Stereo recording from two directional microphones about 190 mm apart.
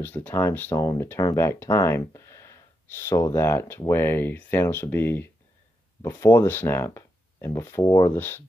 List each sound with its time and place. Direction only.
0.0 s speech: 10° left (ahead or behind)